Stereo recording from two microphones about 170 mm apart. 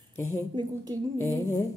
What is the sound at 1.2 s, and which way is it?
Speech, 15° left (ahead or behind).